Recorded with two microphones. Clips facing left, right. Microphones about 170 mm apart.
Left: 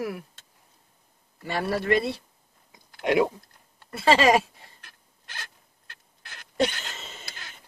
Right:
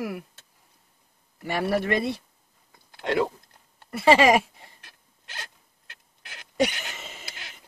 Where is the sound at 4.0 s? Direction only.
15° right (ahead or behind).